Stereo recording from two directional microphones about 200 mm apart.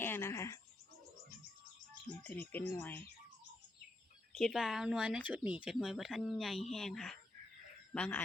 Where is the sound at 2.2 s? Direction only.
5° left (ahead or behind).